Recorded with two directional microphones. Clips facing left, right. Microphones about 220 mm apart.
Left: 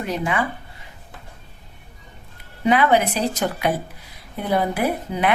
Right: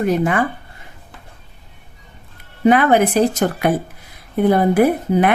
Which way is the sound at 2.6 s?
50° right (ahead or behind).